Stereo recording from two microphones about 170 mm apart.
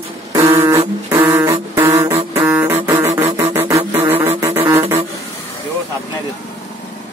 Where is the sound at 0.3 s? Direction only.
20° right (ahead or behind).